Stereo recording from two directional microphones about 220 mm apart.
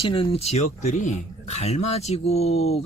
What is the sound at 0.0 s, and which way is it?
Speech, 25° left (ahead or behind).